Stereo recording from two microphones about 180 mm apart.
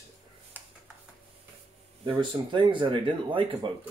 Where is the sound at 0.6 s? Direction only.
10° right (ahead or behind).